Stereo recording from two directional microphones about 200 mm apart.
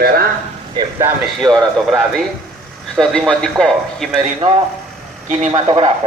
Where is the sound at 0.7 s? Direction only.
20° right (ahead or behind).